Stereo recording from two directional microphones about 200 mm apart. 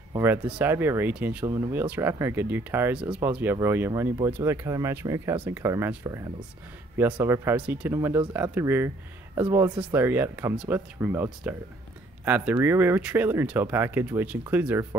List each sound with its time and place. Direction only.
0.1 s speech: 10° right (ahead or behind)